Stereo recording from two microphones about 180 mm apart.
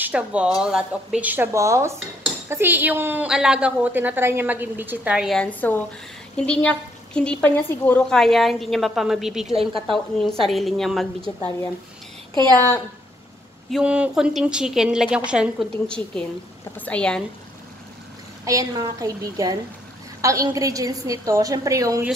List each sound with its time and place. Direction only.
0.0 s speech: 5° right (ahead or behind)
0.6 s dishes: 5° right (ahead or behind)
6.3 s a woman's voice: 5° left (ahead or behind)
13.7 s a woman's voice: 5° right (ahead or behind)
16.7 s speech: 5° left (ahead or behind)
18.4 s a woman's voice: 20° right (ahead or behind)